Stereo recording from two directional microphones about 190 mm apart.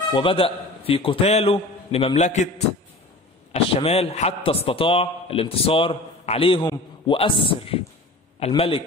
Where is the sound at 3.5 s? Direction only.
30° left (ahead or behind).